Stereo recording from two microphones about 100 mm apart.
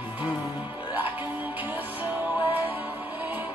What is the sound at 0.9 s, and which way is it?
Music, 20° right (ahead or behind).